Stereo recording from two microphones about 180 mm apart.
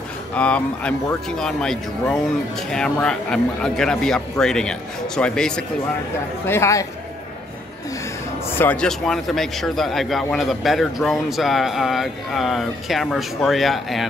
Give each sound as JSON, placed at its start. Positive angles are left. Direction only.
{"t": 0.3, "sound": "a man's voice", "side_deg": 5}
{"t": 8.5, "sound": "a man's voice", "side_deg": 10}